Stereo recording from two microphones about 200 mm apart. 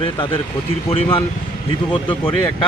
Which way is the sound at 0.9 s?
30° left (ahead or behind).